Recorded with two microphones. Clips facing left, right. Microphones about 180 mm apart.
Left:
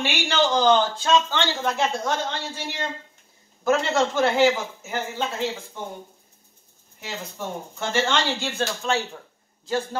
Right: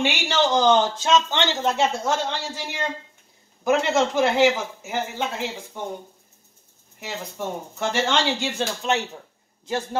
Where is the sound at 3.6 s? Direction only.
15° right (ahead or behind).